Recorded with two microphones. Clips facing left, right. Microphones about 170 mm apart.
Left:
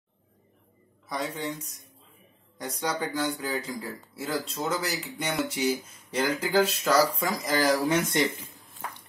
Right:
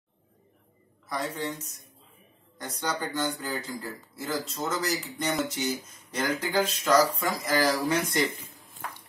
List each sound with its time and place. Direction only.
1.0 s speech: centre (ahead or behind)
7.4 s speech: 20° left (ahead or behind)